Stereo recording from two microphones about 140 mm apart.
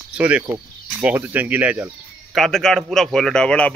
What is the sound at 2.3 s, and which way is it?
A man's voice, centre (ahead or behind).